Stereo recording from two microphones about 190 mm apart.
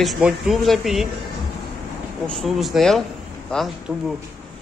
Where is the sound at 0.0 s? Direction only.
Centre (ahead or behind).